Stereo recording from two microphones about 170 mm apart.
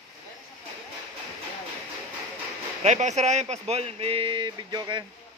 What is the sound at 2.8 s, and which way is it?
Speech, 40° right (ahead or behind).